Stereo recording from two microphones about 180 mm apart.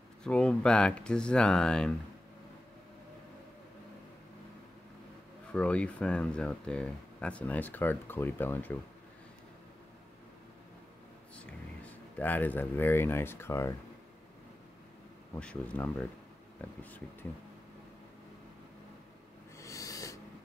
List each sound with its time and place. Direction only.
0.2 s speech: 5° left (ahead or behind)
5.5 s speech: 5° left (ahead or behind)
11.3 s speech: 10° left (ahead or behind)
15.3 s speech: 5° left (ahead or behind)
19.6 s owl: 20° left (ahead or behind)